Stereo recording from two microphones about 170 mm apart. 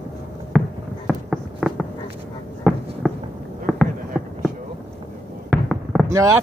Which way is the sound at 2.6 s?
5° right (ahead or behind).